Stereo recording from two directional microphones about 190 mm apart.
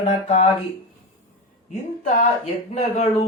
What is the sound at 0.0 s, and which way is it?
Speech, 35° left (ahead or behind).